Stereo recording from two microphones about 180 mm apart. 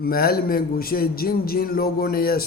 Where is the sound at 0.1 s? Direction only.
55° left (ahead or behind).